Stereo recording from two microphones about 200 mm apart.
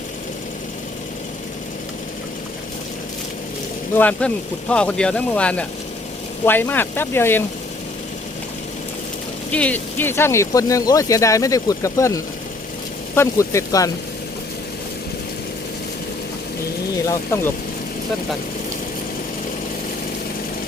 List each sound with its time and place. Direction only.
3.9 s speech: 10° left (ahead or behind)
9.5 s speech: 5° left (ahead or behind)
17.1 s speech: 15° left (ahead or behind)